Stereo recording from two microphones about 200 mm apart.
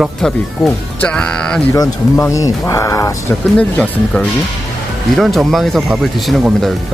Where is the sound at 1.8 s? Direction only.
15° left (ahead or behind); by 6.7 s centre (ahead or behind).